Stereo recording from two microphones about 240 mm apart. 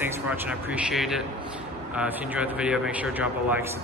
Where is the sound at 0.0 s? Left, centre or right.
Centre.